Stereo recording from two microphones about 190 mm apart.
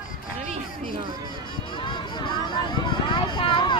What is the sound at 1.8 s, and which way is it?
Vehicle, 25° left (ahead or behind).